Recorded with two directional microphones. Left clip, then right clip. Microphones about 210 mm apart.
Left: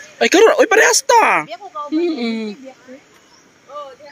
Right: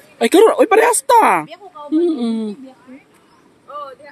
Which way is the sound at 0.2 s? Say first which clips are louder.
Even; 10° right (ahead or behind).